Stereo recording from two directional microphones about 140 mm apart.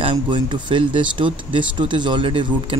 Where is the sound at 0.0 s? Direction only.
35° right (ahead or behind).